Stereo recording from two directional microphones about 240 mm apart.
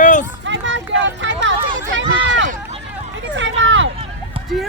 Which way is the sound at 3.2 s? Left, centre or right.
Right.